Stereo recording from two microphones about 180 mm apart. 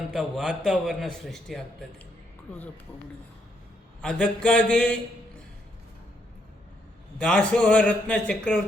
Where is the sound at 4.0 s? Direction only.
5° left (ahead or behind).